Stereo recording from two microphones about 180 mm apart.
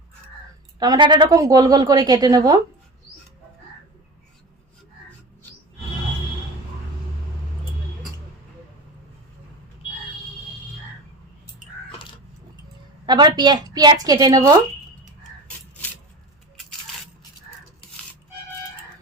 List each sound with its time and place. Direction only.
0.8 s a woman's voice: 25° right (ahead or behind)
13.1 s a woman's voice: 25° right (ahead or behind)